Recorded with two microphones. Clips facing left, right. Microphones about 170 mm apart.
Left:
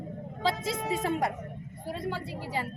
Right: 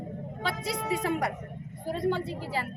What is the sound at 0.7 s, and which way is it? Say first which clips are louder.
Speech: right 1 dB; 25° left (ahead or behind).